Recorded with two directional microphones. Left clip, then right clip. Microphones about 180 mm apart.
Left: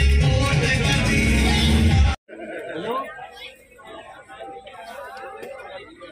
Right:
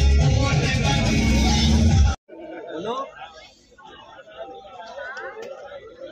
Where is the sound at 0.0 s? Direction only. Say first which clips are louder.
Left 2 dB; 75° right (ahead or behind).